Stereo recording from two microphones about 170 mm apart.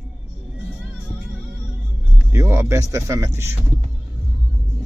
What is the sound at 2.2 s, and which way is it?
Speech, 15° right (ahead or behind).